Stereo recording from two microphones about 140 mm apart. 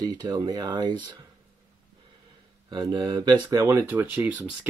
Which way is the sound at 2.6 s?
30° right (ahead or behind).